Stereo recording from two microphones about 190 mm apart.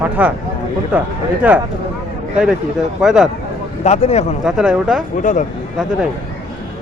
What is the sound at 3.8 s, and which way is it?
Speech, 35° left (ahead or behind).